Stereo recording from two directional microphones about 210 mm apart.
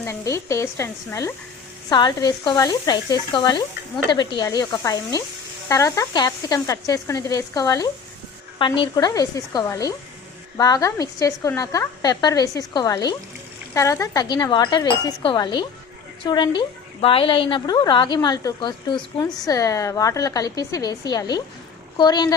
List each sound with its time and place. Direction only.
0.0 s a woman's voice: 15° left (ahead or behind)